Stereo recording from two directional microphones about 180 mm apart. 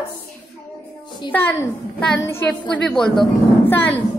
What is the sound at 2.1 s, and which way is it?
A woman's voice, 10° left (ahead or behind).